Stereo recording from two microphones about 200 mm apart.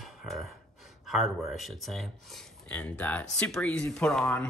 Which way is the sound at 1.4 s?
Centre (ahead or behind).